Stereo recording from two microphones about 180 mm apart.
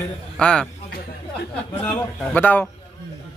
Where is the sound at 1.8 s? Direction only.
10° left (ahead or behind).